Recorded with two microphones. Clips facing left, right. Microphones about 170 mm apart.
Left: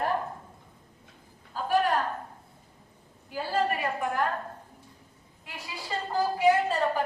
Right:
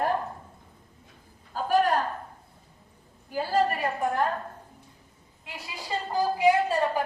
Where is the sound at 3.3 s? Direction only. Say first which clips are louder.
Right 3 dB; 40° right (ahead or behind).